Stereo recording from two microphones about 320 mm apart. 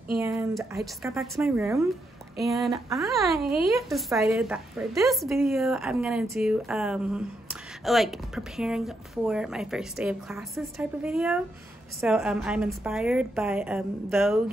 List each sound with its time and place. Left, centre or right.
0.2 s a woman's voice: centre